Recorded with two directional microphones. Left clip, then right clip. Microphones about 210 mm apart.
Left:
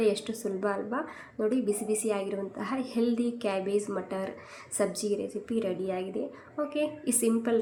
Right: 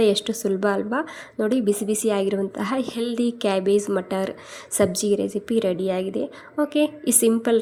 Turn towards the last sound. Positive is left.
turn(degrees=-35)  # may be behind; listen again after turning